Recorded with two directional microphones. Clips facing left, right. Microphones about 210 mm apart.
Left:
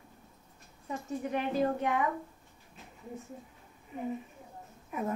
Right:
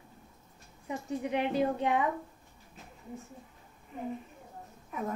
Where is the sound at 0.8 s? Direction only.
20° right (ahead or behind).